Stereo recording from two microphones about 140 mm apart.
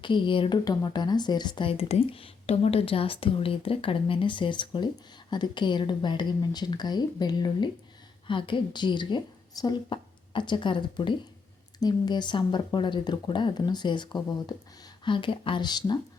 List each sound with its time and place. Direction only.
0.0 s speech: 35° left (ahead or behind)